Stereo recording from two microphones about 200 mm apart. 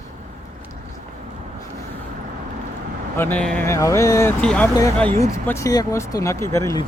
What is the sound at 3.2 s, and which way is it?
Speech, 10° left (ahead or behind).